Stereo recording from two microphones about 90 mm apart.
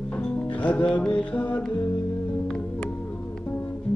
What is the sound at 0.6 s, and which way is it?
Mantra, 15° left (ahead or behind).